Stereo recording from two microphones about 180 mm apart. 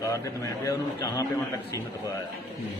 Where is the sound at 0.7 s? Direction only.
20° left (ahead or behind).